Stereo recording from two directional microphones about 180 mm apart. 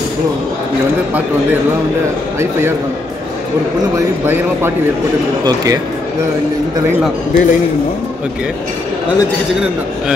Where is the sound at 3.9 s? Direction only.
10° right (ahead or behind).